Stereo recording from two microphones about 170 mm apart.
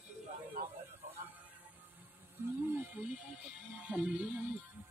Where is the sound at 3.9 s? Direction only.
5° right (ahead or behind).